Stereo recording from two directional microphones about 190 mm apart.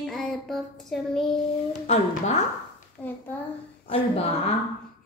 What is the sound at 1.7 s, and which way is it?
Speech, 35° left (ahead or behind).